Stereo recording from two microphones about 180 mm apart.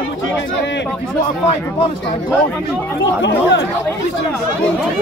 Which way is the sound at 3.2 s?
75° left (ahead or behind).